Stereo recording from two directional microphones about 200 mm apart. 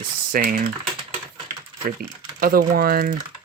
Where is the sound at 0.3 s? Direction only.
45° right (ahead or behind).